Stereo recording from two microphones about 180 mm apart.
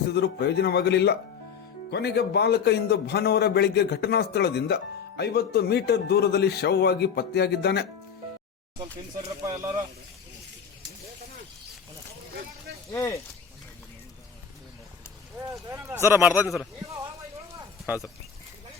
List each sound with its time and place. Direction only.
0.1 s a man's voice: 65° left (ahead or behind)
9.4 s speech: 20° right (ahead or behind)
12.9 s speech: 15° left (ahead or behind)
15.7 s speech: 15° right (ahead or behind)
17.8 s speech: 10° right (ahead or behind)